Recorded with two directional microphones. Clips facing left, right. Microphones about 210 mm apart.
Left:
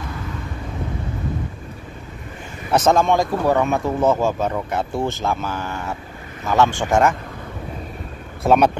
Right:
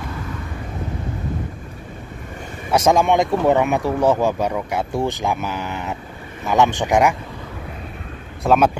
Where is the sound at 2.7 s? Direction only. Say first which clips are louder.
Even; 10° right (ahead or behind).